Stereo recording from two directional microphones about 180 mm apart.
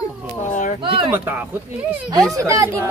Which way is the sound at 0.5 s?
45° left (ahead or behind).